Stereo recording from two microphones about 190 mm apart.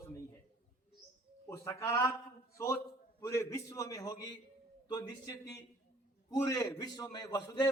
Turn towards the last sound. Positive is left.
turn(degrees=20)  # may be behind; listen again after turning